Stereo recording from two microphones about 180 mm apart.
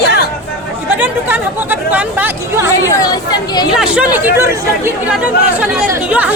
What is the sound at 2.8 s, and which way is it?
Speech, 20° left (ahead or behind).